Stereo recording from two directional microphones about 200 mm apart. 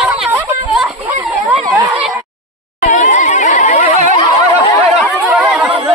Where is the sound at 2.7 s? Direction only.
40° left (ahead or behind).